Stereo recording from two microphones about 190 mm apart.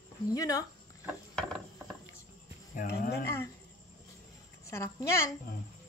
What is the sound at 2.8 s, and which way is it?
Speech, 60° left (ahead or behind).